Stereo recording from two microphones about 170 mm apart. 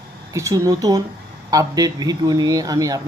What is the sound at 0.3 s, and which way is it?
Speech, 20° right (ahead or behind).